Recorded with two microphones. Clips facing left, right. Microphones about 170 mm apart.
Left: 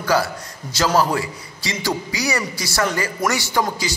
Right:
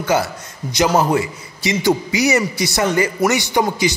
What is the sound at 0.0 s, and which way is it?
A man's voice, 20° right (ahead or behind).